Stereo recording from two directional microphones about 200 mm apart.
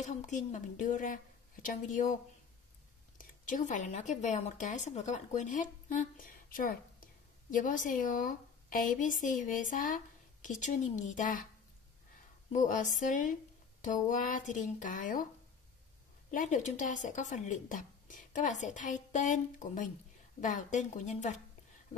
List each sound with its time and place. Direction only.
0.0 s a woman's voice: 35° left (ahead or behind)
3.2 s a woman's voice: 45° left (ahead or behind)
12.5 s a woman's voice: 40° left (ahead or behind)
16.3 s a woman's voice: 40° left (ahead or behind)